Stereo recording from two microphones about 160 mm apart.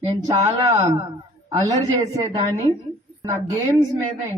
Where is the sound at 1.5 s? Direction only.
20° right (ahead or behind).